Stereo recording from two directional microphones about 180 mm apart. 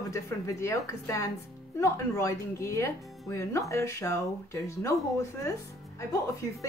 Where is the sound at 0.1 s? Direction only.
15° left (ahead or behind).